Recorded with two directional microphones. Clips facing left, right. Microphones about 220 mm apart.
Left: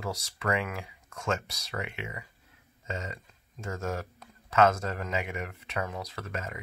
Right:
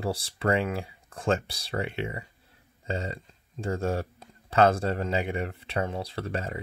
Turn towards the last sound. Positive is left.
turn(degrees=-30)  # may be behind; listen again after turning